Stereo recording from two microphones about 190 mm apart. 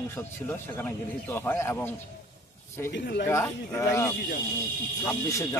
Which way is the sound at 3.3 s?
15° left (ahead or behind).